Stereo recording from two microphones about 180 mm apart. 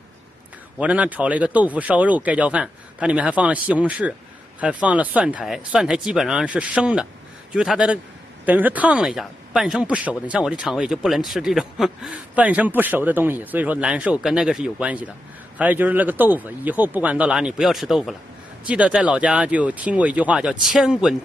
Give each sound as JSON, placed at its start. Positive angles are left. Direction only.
{"t": 0.7, "sound": "speech", "side_deg": -5}